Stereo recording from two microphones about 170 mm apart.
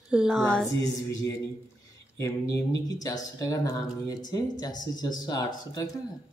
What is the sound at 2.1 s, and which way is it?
Speech, 15° left (ahead or behind).